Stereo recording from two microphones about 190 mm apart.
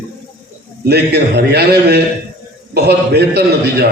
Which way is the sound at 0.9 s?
60° right (ahead or behind).